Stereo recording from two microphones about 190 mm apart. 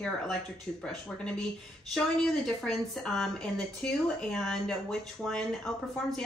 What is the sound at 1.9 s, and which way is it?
Speech, 5° left (ahead or behind).